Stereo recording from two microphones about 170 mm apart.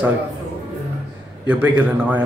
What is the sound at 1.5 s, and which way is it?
Speech, 10° right (ahead or behind).